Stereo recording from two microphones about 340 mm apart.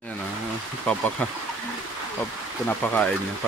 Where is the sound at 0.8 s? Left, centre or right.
Centre.